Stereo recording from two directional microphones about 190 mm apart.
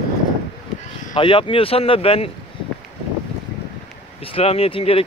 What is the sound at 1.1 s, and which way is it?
Speech, 25° left (ahead or behind).